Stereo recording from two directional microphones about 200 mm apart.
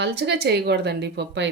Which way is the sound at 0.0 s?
55° right (ahead or behind).